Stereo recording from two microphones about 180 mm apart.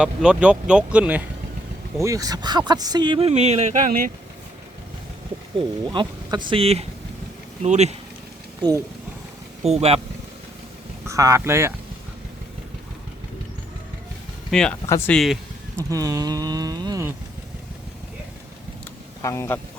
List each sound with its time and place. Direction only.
0.0 s speech: 5° right (ahead or behind)
2.0 s speech: 20° right (ahead or behind); by 4.1 s 50° right (ahead or behind)
5.5 s speech: 25° right (ahead or behind)
9.6 s speech: 35° right (ahead or behind)
11.0 s speech: 15° right (ahead or behind)
14.5 s speech: 5° left (ahead or behind)
14.8 s speech: 15° left (ahead or behind)
15.1 s speech: centre (ahead or behind)
15.9 s speech: 20° right (ahead or behind)
19.2 s speech: 15° left (ahead or behind)